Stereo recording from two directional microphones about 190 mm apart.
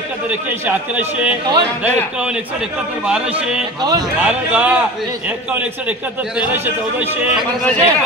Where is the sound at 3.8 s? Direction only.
20° right (ahead or behind).